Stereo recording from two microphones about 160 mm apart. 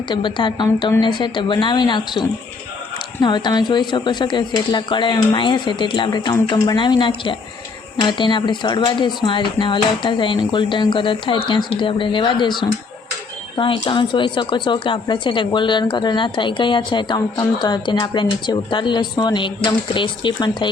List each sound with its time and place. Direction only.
0.1 s speech: 30° left (ahead or behind)